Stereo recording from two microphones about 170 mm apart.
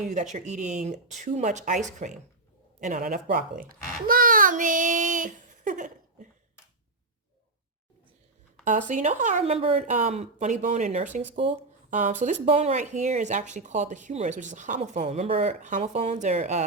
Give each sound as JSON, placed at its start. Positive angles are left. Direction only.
{"t": 0.3, "sound": "speech", "side_deg": -45}
{"t": 4.0, "sound": "child singing", "side_deg": -55}
{"t": 8.6, "sound": "speech", "side_deg": -50}